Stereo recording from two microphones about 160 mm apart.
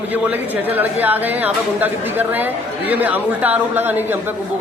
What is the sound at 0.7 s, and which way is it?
Speech, 10° right (ahead or behind).